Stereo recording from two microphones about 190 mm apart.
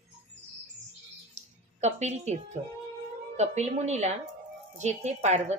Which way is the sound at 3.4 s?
35° right (ahead or behind).